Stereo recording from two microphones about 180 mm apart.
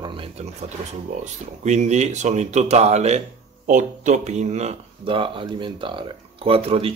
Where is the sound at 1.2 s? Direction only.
40° right (ahead or behind).